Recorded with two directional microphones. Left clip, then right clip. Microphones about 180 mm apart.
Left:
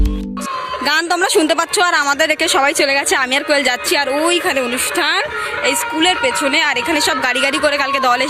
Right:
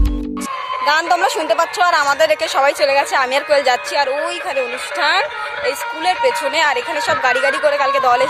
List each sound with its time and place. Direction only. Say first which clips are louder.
0.9 s a woman's voice: right 1 dB; 10° left (ahead or behind); by 8.3 s 5° right (ahead or behind)